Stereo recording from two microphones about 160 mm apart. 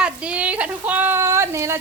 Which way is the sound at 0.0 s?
5° right (ahead or behind).